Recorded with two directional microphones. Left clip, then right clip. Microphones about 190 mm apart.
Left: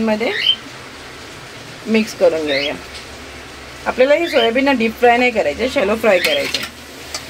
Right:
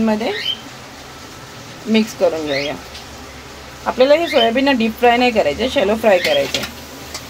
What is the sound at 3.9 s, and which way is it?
Speech, centre (ahead or behind).